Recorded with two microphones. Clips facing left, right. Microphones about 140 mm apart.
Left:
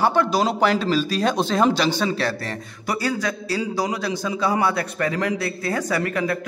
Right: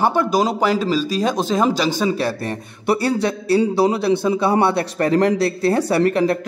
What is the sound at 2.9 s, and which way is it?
A man's voice, 30° right (ahead or behind).